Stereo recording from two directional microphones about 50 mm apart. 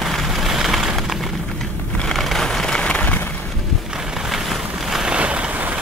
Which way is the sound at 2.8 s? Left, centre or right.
Left.